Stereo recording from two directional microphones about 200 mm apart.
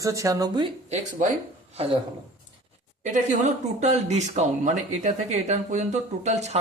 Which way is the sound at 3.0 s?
35° right (ahead or behind).